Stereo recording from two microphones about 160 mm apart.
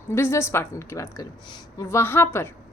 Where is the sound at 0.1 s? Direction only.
15° left (ahead or behind).